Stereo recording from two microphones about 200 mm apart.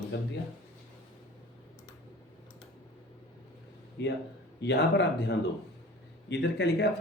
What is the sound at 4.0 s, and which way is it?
Speech, 60° left (ahead or behind).